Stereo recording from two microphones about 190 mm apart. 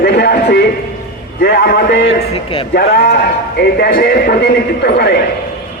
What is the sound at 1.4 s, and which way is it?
A man's voice, 50° left (ahead or behind).